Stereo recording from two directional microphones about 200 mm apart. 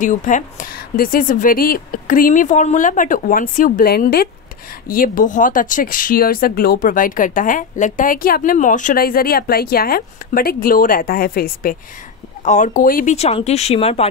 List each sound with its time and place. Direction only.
0.0 s speech: 40° left (ahead or behind)